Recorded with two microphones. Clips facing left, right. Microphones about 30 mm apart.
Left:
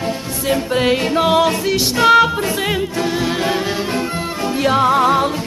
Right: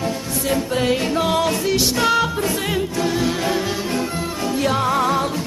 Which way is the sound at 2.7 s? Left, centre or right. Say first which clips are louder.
Left 2 dB; left.